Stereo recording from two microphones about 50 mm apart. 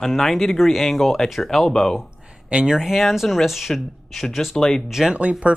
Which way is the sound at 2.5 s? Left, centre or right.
Centre.